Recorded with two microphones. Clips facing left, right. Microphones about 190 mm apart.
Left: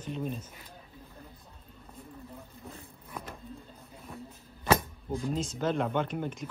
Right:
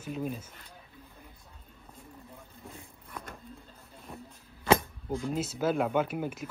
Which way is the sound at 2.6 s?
5° left (ahead or behind).